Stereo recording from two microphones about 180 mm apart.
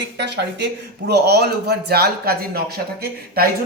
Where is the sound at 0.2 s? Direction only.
70° right (ahead or behind).